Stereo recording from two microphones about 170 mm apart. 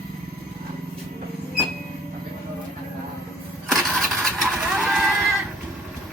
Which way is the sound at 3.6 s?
Centre (ahead or behind).